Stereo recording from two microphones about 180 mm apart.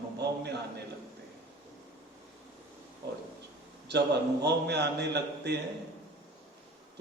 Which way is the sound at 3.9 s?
70° right (ahead or behind).